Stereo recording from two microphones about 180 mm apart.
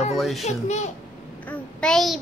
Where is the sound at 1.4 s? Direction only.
5° left (ahead or behind).